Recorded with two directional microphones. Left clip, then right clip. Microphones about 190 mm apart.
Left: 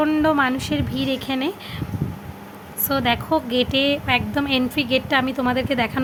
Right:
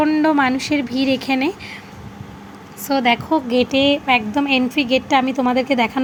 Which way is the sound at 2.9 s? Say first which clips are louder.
Right 3 dB; 5° right (ahead or behind).